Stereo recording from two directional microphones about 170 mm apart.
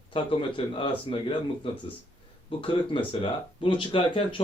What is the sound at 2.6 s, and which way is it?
Speech, 30° left (ahead or behind).